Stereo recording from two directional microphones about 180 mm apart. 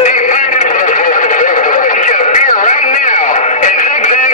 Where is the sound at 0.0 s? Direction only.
45° left (ahead or behind).